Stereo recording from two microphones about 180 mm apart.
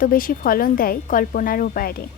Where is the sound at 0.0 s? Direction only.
50° left (ahead or behind).